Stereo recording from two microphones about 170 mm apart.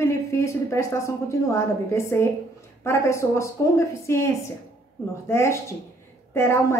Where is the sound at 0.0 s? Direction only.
15° left (ahead or behind).